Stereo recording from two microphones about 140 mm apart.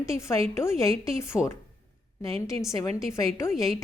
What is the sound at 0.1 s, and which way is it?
A woman's voice, 20° left (ahead or behind).